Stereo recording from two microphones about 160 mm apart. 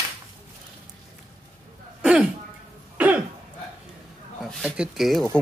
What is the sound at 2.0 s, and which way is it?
Throat clearing, 5° right (ahead or behind).